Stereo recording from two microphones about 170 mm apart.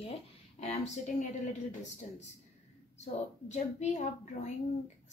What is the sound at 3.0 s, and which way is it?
A woman's voice, 45° left (ahead or behind).